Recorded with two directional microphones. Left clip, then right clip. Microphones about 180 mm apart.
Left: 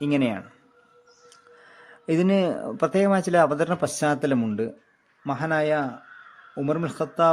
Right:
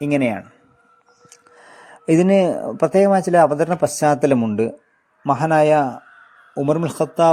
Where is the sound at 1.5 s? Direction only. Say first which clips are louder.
Right 8 dB; 25° right (ahead or behind).